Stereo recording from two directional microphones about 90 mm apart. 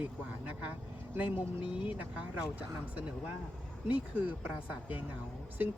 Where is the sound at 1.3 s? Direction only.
75° left (ahead or behind).